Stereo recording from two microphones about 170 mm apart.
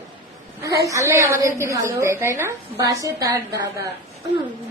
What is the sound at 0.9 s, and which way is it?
A woman's voice, 15° right (ahead or behind).